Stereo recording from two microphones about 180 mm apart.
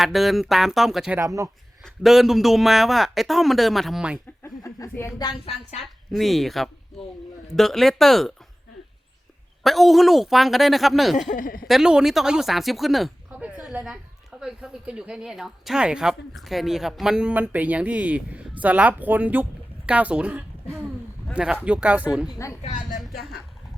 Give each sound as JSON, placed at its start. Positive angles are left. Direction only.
{"t": 0.0, "sound": "a woman's voice", "side_deg": 0}
{"t": 1.2, "sound": "speech", "side_deg": -15}
{"t": 1.8, "sound": "a woman's voice", "side_deg": 0}
{"t": 4.4, "sound": "speech", "side_deg": 15}
{"t": 5.3, "sound": "a woman's voice", "side_deg": 35}
{"t": 5.8, "sound": "a woman's voice", "side_deg": 0}
{"t": 9.6, "sound": "a woman's voice", "side_deg": 0}
{"t": 11.3, "sound": "a woman's voice", "side_deg": 50}
{"t": 11.7, "sound": "a woman's voice", "side_deg": -5}
{"t": 22.3, "sound": "speech", "side_deg": 15}
{"t": 22.6, "sound": "a woman's voice", "side_deg": 45}